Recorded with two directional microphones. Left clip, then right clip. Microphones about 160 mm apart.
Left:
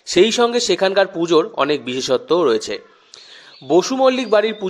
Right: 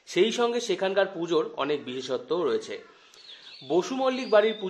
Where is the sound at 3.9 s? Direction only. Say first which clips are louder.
Left 9 dB; 30° left (ahead or behind).